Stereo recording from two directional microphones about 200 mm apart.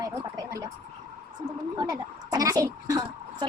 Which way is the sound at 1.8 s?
20° right (ahead or behind).